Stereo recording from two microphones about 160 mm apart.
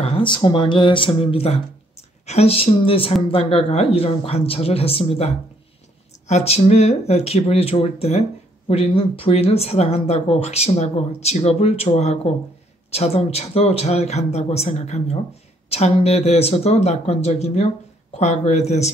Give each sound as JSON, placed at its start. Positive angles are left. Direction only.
{"t": 0.0, "sound": "speech", "side_deg": 35}